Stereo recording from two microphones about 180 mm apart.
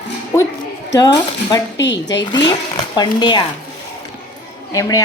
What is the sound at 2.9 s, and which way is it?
Speech, 25° left (ahead or behind).